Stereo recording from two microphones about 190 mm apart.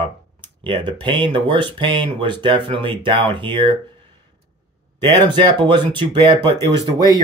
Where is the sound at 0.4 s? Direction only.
25° right (ahead or behind).